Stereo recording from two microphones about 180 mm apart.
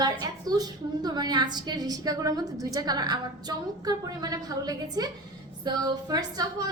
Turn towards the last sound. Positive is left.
turn(degrees=-20)  # may be behind; listen again after turning